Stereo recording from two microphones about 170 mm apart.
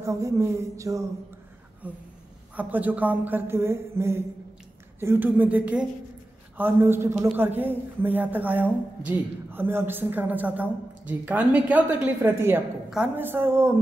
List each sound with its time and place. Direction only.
0.0 s speech: 20° right (ahead or behind)
2.5 s a woman's voice: 10° right (ahead or behind)